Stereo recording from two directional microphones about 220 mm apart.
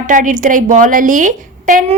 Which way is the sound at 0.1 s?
35° right (ahead or behind).